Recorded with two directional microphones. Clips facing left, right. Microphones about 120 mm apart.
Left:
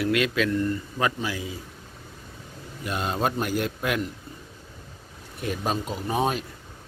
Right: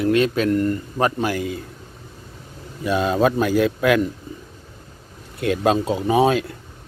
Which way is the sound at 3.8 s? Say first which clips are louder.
Right 10 dB; 90° right.